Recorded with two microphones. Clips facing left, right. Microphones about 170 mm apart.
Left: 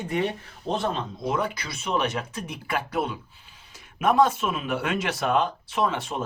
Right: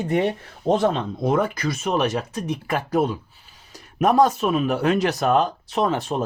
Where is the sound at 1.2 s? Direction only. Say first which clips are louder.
Right 7 dB; 50° right (ahead or behind).